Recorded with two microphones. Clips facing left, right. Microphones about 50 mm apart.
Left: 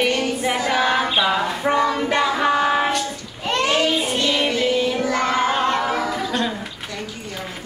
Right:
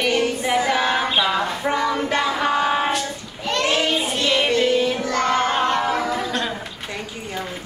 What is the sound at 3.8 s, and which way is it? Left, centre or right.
Child singing, centre.